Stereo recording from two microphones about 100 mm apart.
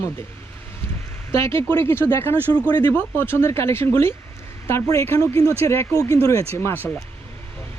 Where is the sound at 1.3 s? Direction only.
25° left (ahead or behind).